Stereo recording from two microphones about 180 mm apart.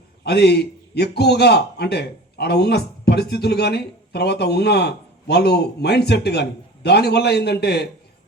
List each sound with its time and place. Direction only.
0.3 s a man's voice: 65° left (ahead or behind)